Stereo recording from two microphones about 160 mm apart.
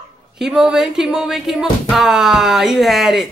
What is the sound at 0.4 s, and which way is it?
Speech, 5° right (ahead or behind).